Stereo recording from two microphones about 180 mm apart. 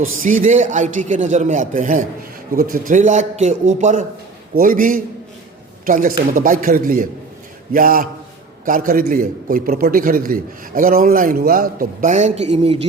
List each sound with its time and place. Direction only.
0.2 s a man's voice: 45° right (ahead or behind)